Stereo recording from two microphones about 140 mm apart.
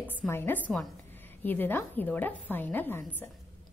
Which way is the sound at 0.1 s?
15° left (ahead or behind).